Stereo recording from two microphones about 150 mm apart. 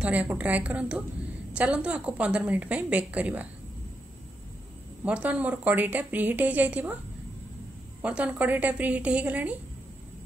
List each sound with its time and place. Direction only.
0.0 s a woman's voice: 10° right (ahead or behind)
5.0 s a woman's voice: 10° right (ahead or behind)
8.0 s a woman's voice: 10° right (ahead or behind)